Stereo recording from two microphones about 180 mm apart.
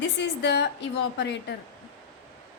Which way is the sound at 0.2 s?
70° left (ahead or behind).